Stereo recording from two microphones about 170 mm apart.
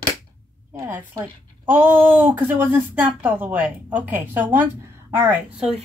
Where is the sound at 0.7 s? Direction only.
15° right (ahead or behind).